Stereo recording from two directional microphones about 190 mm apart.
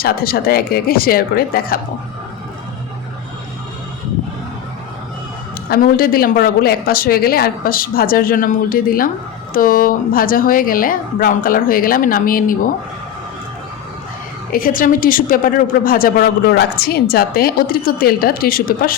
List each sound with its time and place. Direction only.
0.0 s a woman's voice: 50° left (ahead or behind)
5.6 s a woman's voice: 50° left (ahead or behind)
14.5 s a woman's voice: 50° left (ahead or behind)